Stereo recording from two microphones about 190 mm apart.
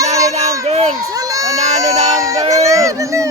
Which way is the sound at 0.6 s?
35° right (ahead or behind).